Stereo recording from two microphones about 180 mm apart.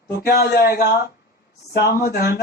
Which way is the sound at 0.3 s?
60° left (ahead or behind).